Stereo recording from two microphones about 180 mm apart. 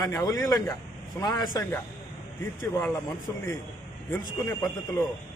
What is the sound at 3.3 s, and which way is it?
A man's voice, 15° left (ahead or behind).